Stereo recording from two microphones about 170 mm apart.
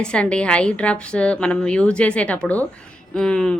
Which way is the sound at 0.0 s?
5° left (ahead or behind).